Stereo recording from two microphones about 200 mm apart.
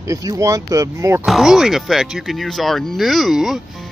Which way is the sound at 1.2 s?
Centre (ahead or behind).